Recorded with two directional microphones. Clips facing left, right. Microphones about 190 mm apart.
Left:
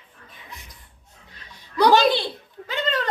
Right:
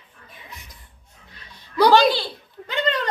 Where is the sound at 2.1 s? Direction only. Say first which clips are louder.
Even; 25° left (ahead or behind).